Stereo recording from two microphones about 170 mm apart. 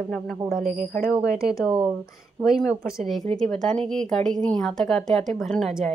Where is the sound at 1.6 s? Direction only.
5° right (ahead or behind).